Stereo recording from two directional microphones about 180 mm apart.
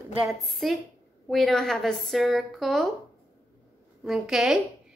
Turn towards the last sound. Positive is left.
turn(degrees=0)  # may be behind; listen again after turning